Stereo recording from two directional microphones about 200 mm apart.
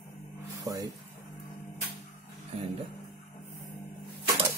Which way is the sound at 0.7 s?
15° right (ahead or behind).